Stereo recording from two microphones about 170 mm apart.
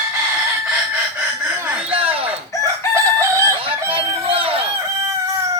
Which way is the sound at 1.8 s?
35° right (ahead or behind).